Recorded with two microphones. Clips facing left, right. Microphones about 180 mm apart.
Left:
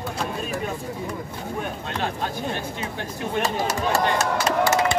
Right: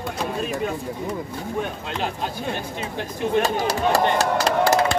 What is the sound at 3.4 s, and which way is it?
Speech, 35° right (ahead or behind).